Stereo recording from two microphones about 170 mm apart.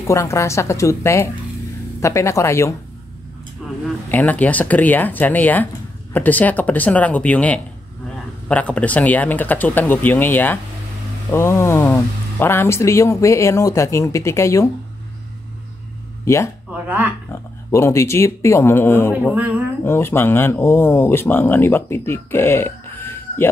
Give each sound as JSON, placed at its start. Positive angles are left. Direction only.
{"t": 0.0, "sound": "speech", "side_deg": 15}
{"t": 4.1, "sound": "speech", "side_deg": 10}
{"t": 16.7, "sound": "speech", "side_deg": -10}
{"t": 17.3, "sound": "speech", "side_deg": 15}
{"t": 19.3, "sound": "speech", "side_deg": -10}
{"t": 19.8, "sound": "speech", "side_deg": 15}